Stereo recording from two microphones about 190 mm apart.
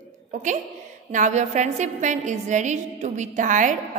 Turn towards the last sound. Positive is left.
turn(degrees=-40)  # may be behind; listen again after turning